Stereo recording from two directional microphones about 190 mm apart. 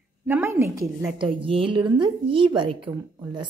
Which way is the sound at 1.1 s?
25° right (ahead or behind).